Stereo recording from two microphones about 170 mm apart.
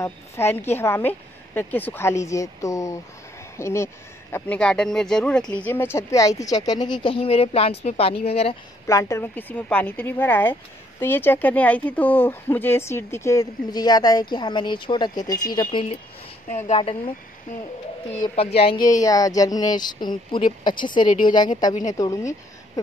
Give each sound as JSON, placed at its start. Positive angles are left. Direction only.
{"t": 0.0, "sound": "speech", "side_deg": 15}
{"t": 8.8, "sound": "speech", "side_deg": 15}
{"t": 15.7, "sound": "speech", "side_deg": 35}
{"t": 18.2, "sound": "speech", "side_deg": 35}
{"t": 18.9, "sound": "speech", "side_deg": 20}